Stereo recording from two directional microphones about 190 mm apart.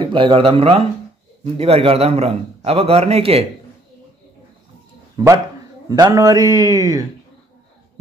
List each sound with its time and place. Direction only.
0.0 s a man's voice: 25° right (ahead or behind)
5.1 s speech: 15° right (ahead or behind)